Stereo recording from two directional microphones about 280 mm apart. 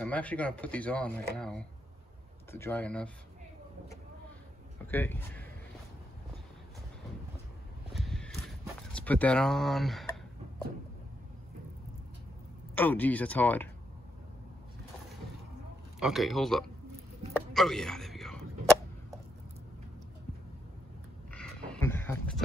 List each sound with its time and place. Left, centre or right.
0.0 s speech: centre
4.9 s speech: centre
7.9 s horse: centre
8.9 s speech: centre
12.7 s speech: centre
16.0 s speech: centre
17.3 s a sound: centre
21.3 s a sound: centre